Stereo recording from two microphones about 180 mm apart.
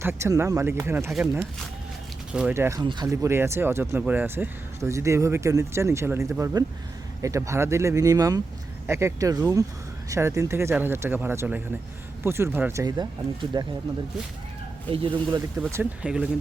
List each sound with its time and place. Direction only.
0.0 s speech: 15° right (ahead or behind)
14.8 s speech: 25° right (ahead or behind)
15.7 s speech: 5° right (ahead or behind)